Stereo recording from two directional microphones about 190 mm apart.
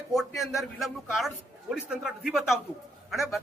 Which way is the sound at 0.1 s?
Centre (ahead or behind).